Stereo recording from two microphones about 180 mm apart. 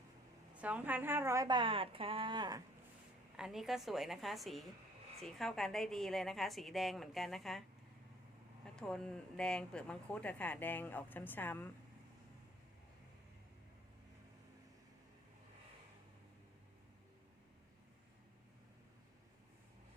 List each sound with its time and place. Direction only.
0.5 s a woman's voice: 10° right (ahead or behind); by 2.6 s 25° right (ahead or behind)
3.3 s a woman's voice: 5° right (ahead or behind)
8.6 s speech: 5° left (ahead or behind)